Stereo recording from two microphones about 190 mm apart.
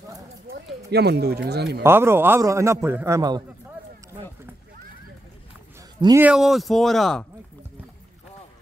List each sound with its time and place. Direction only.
0.9 s speech: 60° right (ahead or behind)
1.8 s a man's voice: 10° right (ahead or behind)
5.9 s speech: 20° right (ahead or behind)
6.2 s speech: 5° right (ahead or behind)